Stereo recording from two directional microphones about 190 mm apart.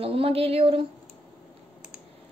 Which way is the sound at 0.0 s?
30° right (ahead or behind).